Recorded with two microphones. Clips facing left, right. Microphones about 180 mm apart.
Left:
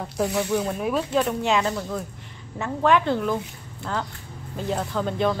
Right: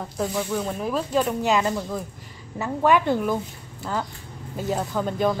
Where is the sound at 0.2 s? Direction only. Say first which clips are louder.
Left 2 dB; centre (ahead or behind).